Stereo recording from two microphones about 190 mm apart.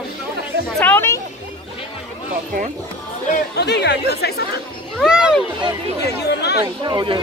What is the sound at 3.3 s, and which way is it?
Speech, 60° left (ahead or behind).